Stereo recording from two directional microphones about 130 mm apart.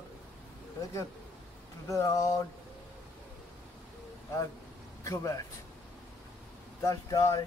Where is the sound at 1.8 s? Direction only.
25° left (ahead or behind).